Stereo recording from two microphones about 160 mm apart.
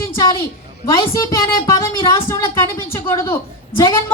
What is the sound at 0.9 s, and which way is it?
A woman's voice, 20° left (ahead or behind).